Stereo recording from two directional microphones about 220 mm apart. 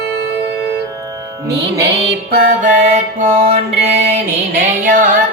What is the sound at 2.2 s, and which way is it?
Music, 40° right (ahead or behind).